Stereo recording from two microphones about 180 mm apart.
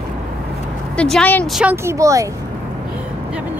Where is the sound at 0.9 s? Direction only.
5° left (ahead or behind).